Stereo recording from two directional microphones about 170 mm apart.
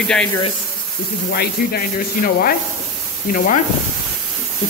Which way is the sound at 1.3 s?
65° left (ahead or behind).